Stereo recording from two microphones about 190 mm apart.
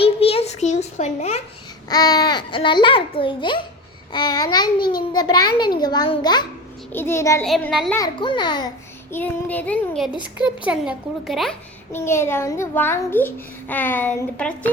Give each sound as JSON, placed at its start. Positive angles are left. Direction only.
{"t": 0.0, "sound": "a sound", "side_deg": 30}
{"t": 1.9, "sound": "a child's voice", "side_deg": 20}
{"t": 6.9, "sound": "a child's voice", "side_deg": 10}
{"t": 7.4, "sound": "a woman's voice", "side_deg": 0}
{"t": 7.9, "sound": "a child's voice", "side_deg": 20}
{"t": 9.1, "sound": "a child's voice", "side_deg": 10}
{"t": 11.9, "sound": "a child's voice", "side_deg": 15}